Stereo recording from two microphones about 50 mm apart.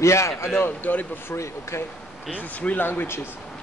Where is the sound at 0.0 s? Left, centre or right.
Left.